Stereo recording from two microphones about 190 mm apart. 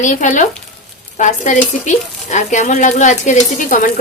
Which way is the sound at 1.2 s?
40° left (ahead or behind).